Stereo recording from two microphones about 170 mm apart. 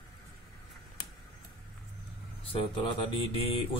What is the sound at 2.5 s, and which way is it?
Speech, 30° left (ahead or behind).